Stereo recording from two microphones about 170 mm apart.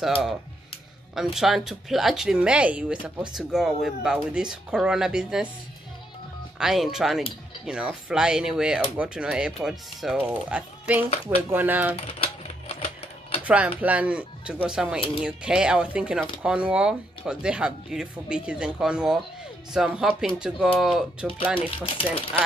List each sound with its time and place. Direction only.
0.0 s speech: centre (ahead or behind)
6.6 s speech: centre (ahead or behind)
12.0 s typewriter: 35° left (ahead or behind)
13.4 s speech: 10° right (ahead or behind)
21.8 s speech: 35° left (ahead or behind)